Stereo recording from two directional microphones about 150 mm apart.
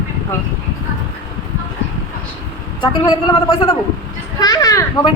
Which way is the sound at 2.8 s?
30° left (ahead or behind).